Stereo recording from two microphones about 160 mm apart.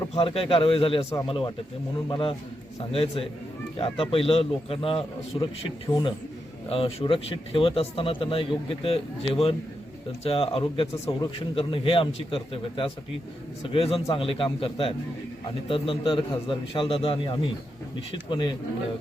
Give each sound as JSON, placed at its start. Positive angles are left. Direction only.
{"t": 0.1, "sound": "speech", "side_deg": 35}